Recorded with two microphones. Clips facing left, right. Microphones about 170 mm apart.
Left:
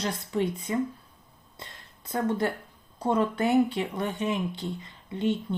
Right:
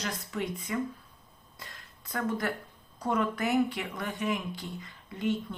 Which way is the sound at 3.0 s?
30° left (ahead or behind).